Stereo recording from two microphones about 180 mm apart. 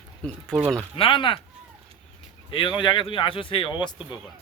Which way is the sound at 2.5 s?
30° left (ahead or behind).